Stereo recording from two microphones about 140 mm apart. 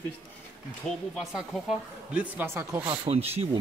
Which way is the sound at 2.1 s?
10° right (ahead or behind).